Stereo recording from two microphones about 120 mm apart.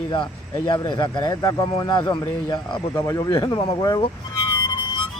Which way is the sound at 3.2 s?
40° left (ahead or behind).